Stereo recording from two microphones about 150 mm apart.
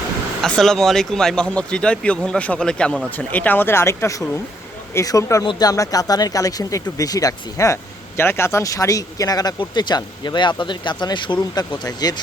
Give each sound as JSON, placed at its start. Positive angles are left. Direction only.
{"t": 0.4, "sound": "speech", "side_deg": 0}